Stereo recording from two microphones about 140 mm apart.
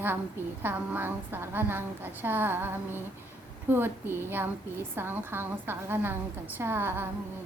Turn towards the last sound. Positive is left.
turn(degrees=-15)  # may be behind; listen again after turning